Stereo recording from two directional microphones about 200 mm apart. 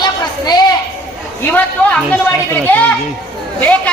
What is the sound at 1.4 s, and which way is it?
A man's voice, 10° left (ahead or behind).